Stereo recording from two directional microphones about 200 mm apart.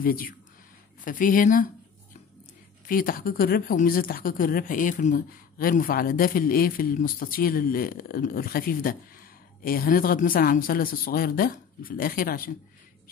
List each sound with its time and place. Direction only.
0.0 s speech: 45° left (ahead or behind)
2.9 s speech: 45° left (ahead or behind)